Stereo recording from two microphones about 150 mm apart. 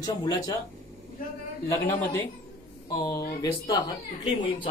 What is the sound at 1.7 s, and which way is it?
Speech, 15° left (ahead or behind).